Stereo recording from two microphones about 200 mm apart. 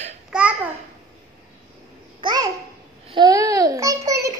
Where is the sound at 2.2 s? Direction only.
20° right (ahead or behind).